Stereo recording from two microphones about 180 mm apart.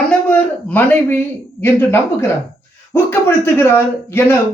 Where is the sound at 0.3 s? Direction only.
10° left (ahead or behind).